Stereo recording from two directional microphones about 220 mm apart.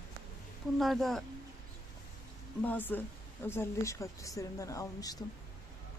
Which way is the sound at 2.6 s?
10° left (ahead or behind).